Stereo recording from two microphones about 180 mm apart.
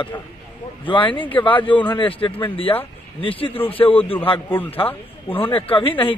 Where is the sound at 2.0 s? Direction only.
30° left (ahead or behind).